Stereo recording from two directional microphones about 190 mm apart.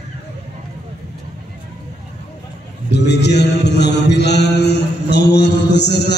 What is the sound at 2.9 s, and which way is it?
Mantra, 65° left (ahead or behind).